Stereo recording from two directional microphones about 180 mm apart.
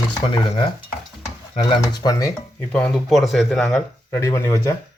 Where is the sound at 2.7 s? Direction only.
5° left (ahead or behind).